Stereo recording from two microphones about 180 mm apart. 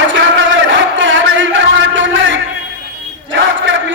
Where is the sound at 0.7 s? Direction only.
90° right.